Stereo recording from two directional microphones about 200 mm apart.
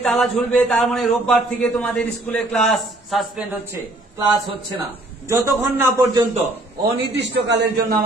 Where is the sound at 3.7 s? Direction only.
20° right (ahead or behind).